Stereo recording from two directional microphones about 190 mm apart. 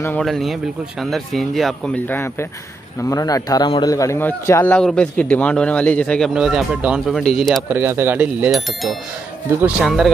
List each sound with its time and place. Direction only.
0.2 s a man's voice: centre (ahead or behind)
3.0 s a man's voice: 20° left (ahead or behind); by 7.6 s centre (ahead or behind)
7.7 s a man's voice: 10° right (ahead or behind)